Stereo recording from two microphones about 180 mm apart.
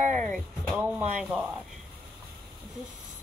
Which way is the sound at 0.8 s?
10° right (ahead or behind).